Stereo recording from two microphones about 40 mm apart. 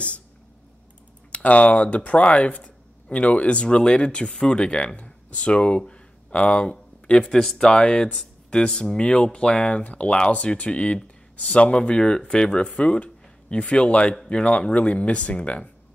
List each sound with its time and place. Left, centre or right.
1.3 s speech: left
7.2 s speech: centre
7.7 s speech: centre